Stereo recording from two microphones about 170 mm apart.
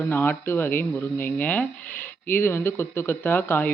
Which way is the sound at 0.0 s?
10° left (ahead or behind).